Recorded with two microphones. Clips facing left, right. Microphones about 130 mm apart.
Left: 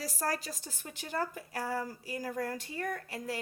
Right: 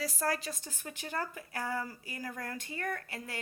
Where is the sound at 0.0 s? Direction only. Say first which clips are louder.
Right 1 dB; 40° left (ahead or behind).